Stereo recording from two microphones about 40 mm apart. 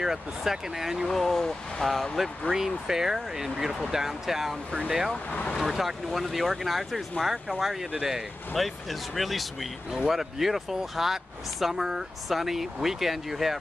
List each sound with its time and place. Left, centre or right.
0.0 s speech: centre
1.0 s speech: centre
2.5 s speech: centre
5.3 s speech: left
5.6 s speech: centre
8.5 s speech: centre